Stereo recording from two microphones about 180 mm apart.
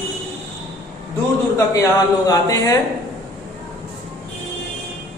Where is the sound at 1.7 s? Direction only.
20° left (ahead or behind).